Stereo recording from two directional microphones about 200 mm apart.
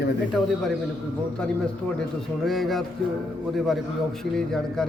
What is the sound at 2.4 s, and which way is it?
Speech, centre (ahead or behind).